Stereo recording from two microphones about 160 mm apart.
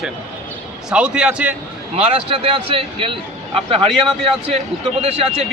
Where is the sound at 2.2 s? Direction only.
35° right (ahead or behind).